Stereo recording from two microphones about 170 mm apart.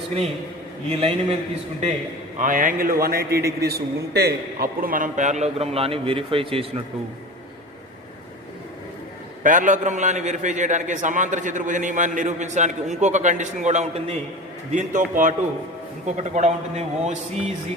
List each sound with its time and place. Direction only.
0.9 s a man's voice: 35° right (ahead or behind)
2.4 s a man's voice: 50° right (ahead or behind); by 6.8 s 35° right (ahead or behind)
9.4 s a man's voice: 50° right (ahead or behind)